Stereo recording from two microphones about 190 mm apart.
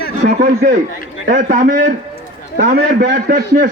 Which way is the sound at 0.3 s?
40° right (ahead or behind).